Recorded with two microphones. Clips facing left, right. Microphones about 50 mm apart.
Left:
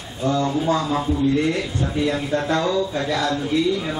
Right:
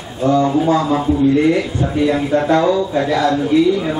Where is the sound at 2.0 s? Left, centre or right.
Centre.